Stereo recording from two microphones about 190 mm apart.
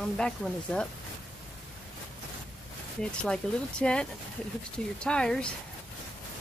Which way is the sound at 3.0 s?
5° left (ahead or behind).